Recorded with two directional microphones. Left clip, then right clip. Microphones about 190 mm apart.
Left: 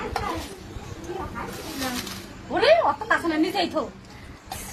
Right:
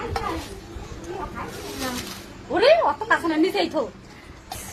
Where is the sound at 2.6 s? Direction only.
35° right (ahead or behind).